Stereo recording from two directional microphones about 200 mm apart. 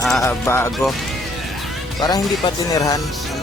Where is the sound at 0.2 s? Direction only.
10° left (ahead or behind).